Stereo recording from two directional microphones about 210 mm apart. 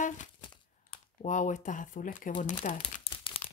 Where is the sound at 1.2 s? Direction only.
35° left (ahead or behind).